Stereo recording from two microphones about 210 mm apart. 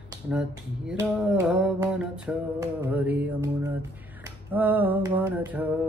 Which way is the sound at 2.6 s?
10° right (ahead or behind).